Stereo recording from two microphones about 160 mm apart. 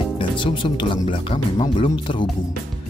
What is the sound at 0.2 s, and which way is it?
Speech, 30° left (ahead or behind).